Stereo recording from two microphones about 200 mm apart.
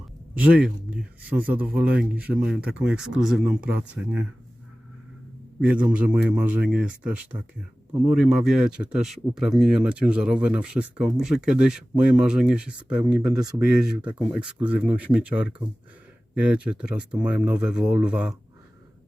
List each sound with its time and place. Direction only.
0.3 s a man's voice: 5° right (ahead or behind)
5.5 s a man's voice: 5° right (ahead or behind)
13.3 s speech: 20° right (ahead or behind)
13.7 s a man's voice: 5° right (ahead or behind)